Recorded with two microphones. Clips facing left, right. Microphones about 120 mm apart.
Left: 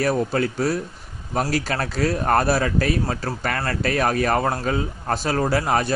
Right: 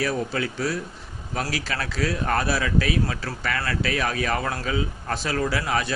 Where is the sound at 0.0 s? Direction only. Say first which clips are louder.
Left 5 dB; 45° left (ahead or behind).